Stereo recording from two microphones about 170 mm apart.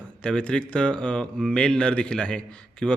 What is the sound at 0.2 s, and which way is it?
Speech, 5° left (ahead or behind).